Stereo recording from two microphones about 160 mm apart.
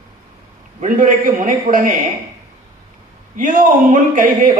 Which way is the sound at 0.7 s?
55° right (ahead or behind).